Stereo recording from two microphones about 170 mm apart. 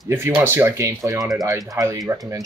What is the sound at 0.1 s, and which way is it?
Speech, 10° right (ahead or behind).